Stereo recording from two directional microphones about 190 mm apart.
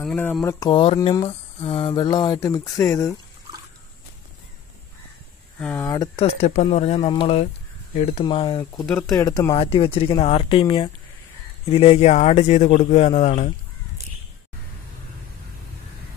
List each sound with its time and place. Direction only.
0.0 s speech: 5° left (ahead or behind)
0.6 s speech: 25° left (ahead or behind)
5.6 s speech: 10° left (ahead or behind)
6.1 s speech: 35° left (ahead or behind)
8.8 s speech: 5° left (ahead or behind)
9.1 s speech: 20° left (ahead or behind); by 13.5 s 40° left (ahead or behind)